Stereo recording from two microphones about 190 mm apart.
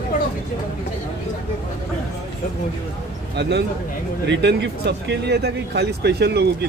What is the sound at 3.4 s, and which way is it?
Speech, 65° right (ahead or behind).